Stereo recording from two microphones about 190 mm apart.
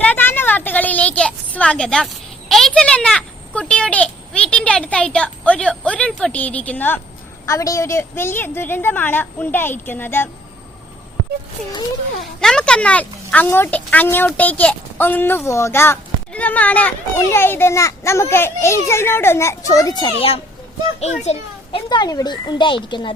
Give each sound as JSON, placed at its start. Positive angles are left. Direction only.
{"t": 0.0, "sound": "a sound", "side_deg": 10}
{"t": 2.5, "sound": "speech", "side_deg": 0}
{"t": 12.4, "sound": "a child's voice", "side_deg": 5}